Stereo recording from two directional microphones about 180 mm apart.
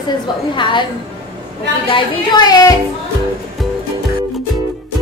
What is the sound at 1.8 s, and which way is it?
Speech, 30° left (ahead or behind).